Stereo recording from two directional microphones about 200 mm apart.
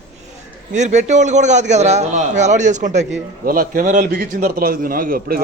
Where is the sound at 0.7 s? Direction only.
35° right (ahead or behind).